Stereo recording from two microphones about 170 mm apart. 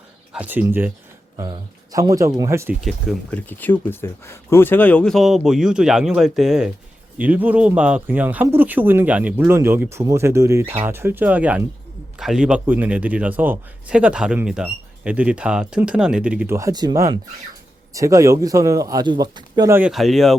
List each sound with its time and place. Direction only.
0.3 s a man's voice: 10° right (ahead or behind)
1.4 s speech: 20° right (ahead or behind)
2.8 s a man's voice: 5° left (ahead or behind); by 19.7 s 25° right (ahead or behind)
19.7 s speech: 5° right (ahead or behind)